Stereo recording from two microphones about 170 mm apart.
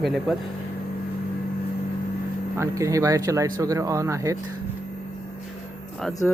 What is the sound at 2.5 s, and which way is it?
Speech, 15° right (ahead or behind).